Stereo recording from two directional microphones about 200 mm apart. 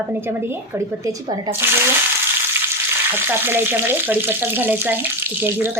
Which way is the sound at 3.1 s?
10° right (ahead or behind).